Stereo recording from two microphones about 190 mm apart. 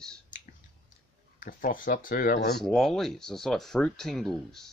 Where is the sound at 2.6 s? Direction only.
Centre (ahead or behind).